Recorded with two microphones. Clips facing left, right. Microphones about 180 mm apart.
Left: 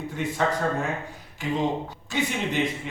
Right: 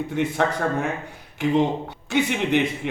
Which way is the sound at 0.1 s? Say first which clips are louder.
Right 2 dB; 65° right (ahead or behind).